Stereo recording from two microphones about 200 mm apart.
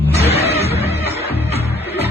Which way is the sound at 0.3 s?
30° left (ahead or behind).